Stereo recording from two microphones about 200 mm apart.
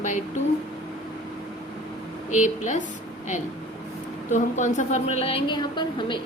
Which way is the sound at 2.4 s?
40° left (ahead or behind).